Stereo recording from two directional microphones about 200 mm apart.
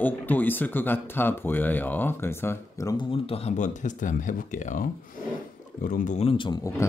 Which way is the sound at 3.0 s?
30° left (ahead or behind).